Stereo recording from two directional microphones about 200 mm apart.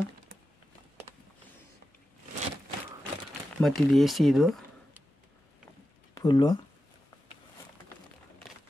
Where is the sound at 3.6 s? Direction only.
Centre (ahead or behind).